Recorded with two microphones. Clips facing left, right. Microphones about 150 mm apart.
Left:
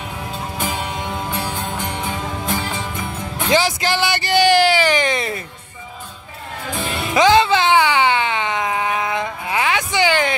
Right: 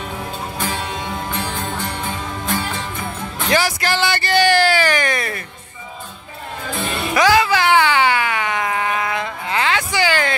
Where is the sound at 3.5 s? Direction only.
20° left (ahead or behind).